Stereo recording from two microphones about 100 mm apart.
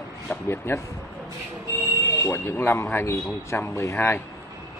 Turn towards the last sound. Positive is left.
turn(degrees=25)  # may be behind; listen again after turning